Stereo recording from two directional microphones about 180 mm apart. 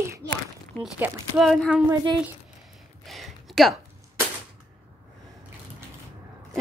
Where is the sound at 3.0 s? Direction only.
Centre (ahead or behind).